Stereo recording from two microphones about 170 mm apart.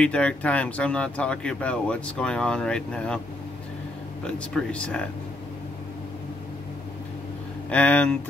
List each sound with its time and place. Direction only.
0.0 s speech: 5° left (ahead or behind)
4.6 s speech: 5° left (ahead or behind)
7.7 s speech: 10° left (ahead or behind)